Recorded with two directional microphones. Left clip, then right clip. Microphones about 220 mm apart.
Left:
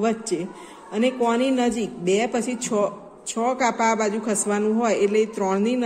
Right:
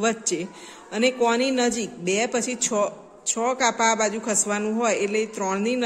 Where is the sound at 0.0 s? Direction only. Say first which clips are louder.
Even; 20° right (ahead or behind).